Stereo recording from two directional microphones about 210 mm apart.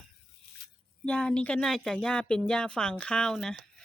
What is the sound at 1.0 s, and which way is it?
Speech, 5° left (ahead or behind).